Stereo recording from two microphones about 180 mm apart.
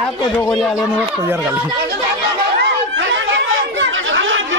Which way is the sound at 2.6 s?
85° right.